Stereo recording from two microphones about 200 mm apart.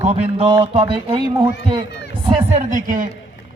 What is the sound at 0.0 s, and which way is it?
Music, 30° right (ahead or behind).